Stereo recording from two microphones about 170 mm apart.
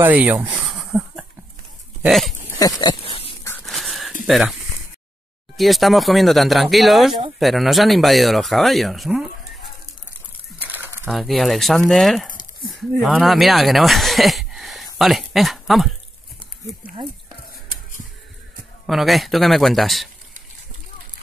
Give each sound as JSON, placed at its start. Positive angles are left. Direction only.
{"t": 0.0, "sound": "speech", "side_deg": -10}
{"t": 2.8, "sound": "a sound", "side_deg": 30}
{"t": 3.6, "sound": "a sound", "side_deg": 0}
{"t": 4.3, "sound": "speech", "side_deg": 0}
{"t": 5.6, "sound": "speech", "side_deg": 0}
{"t": 10.7, "sound": "bird", "side_deg": -10}
{"t": 11.1, "sound": "speech", "side_deg": 0}
{"t": 18.9, "sound": "speech", "side_deg": 0}